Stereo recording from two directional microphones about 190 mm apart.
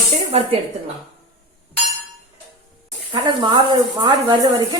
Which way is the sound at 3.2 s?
25° right (ahead or behind).